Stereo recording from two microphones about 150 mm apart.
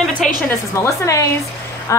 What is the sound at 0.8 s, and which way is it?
Speech, 20° left (ahead or behind).